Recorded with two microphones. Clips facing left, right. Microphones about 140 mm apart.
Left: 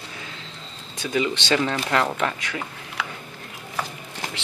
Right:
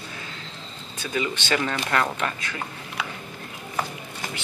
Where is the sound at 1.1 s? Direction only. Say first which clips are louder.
Left 3 dB; 20° left (ahead or behind).